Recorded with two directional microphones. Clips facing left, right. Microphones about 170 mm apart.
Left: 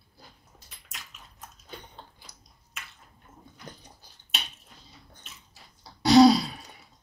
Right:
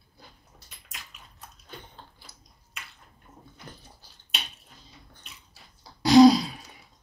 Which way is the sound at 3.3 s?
Centre (ahead or behind).